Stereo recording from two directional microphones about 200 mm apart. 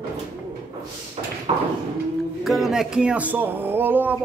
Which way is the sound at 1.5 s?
25° right (ahead or behind).